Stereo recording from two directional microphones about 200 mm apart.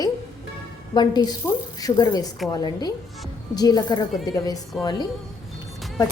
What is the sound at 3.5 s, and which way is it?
A woman's voice, 20° left (ahead or behind).